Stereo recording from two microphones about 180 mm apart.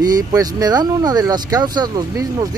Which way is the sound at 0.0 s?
20° right (ahead or behind).